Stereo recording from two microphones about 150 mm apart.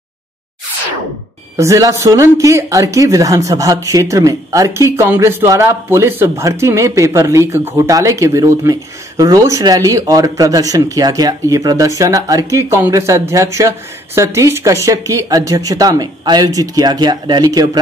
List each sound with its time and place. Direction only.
1.6 s speech: 20° right (ahead or behind)